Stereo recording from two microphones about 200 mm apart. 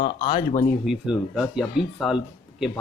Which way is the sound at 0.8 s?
Centre (ahead or behind).